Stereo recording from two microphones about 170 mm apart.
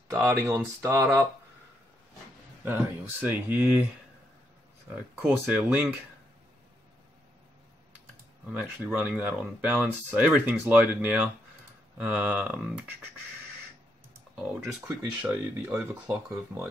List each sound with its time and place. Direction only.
0.1 s speech: 15° right (ahead or behind)
2.6 s speech: 10° right (ahead or behind)
5.2 s speech: 5° right (ahead or behind)
8.5 s speech: 5° right (ahead or behind)
14.6 s speech: centre (ahead or behind)